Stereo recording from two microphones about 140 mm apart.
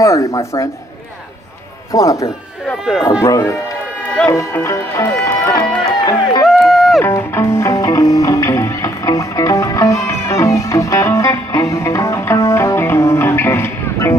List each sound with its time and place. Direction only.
0.0 s speech: 20° left (ahead or behind)
1.9 s speech: 20° left (ahead or behind)
6.4 s run: centre (ahead or behind)
7.0 s music: 20° left (ahead or behind)